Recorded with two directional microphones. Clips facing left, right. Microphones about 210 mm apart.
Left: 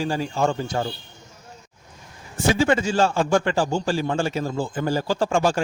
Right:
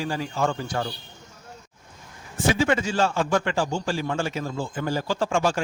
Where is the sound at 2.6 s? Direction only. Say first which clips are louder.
Left 4 dB; 30° left (ahead or behind).